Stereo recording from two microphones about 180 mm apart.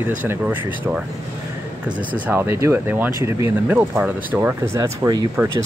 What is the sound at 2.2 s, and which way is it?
Speech, 10° right (ahead or behind).